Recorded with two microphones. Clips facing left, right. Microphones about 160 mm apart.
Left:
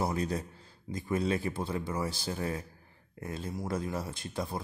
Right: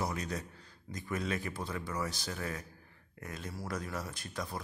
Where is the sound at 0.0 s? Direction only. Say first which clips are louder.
Left 5 dB; 30° left (ahead or behind).